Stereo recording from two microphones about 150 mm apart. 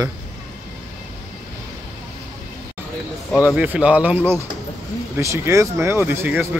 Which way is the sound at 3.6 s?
10° right (ahead or behind).